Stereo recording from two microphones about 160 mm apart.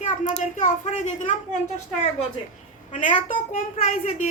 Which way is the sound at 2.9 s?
50° left (ahead or behind).